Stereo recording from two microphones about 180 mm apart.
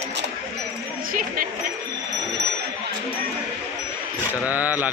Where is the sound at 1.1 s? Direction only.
50° right (ahead or behind).